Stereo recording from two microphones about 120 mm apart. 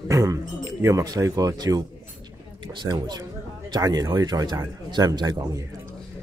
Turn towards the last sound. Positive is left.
turn(degrees=-35)  # may be behind; listen again after turning